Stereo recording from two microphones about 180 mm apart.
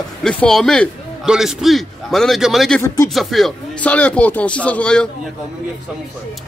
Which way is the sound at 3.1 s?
Centre (ahead or behind).